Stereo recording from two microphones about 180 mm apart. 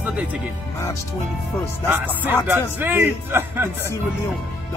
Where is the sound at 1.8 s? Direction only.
10° right (ahead or behind).